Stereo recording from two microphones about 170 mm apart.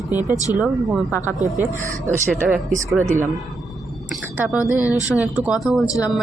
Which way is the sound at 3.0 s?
15° right (ahead or behind).